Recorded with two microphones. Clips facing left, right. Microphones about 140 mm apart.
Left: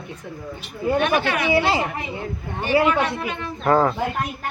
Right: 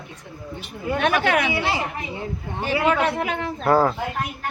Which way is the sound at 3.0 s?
90° right.